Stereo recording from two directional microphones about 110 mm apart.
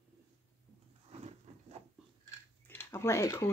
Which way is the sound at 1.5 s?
90° right.